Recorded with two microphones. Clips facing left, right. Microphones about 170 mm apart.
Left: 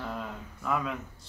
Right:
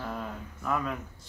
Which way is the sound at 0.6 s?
Centre (ahead or behind).